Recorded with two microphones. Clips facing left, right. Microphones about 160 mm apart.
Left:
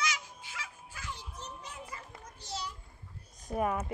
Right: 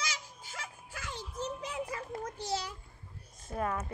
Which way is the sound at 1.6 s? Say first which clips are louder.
Right 8 dB; 90° right.